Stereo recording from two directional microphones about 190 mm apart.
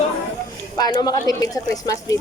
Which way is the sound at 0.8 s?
20° left (ahead or behind).